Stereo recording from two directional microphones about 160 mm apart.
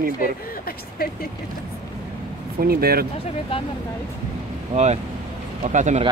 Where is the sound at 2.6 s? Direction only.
70° right (ahead or behind).